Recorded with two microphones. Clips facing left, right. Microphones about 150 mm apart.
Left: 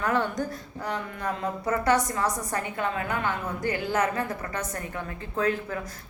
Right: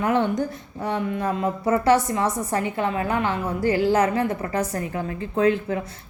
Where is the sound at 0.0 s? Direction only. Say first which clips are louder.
Right 5 dB; 25° right (ahead or behind).